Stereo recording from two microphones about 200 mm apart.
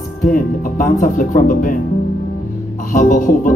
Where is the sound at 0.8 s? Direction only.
40° left (ahead or behind).